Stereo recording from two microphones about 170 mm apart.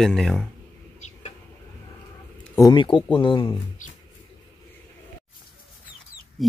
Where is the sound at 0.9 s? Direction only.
40° left (ahead or behind).